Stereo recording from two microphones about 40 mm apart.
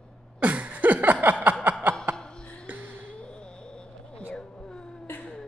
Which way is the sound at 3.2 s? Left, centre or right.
Left.